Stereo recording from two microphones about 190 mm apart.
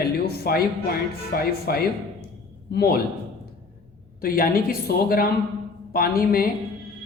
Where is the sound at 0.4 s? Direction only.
55° left (ahead or behind).